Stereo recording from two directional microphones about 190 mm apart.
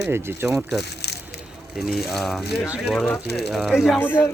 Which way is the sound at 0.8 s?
60° left (ahead or behind).